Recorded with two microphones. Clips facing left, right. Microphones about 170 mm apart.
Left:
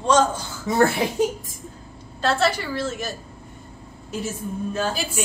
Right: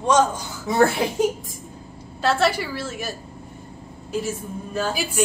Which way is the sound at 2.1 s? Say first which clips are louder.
Right 1 dB; 10° right (ahead or behind).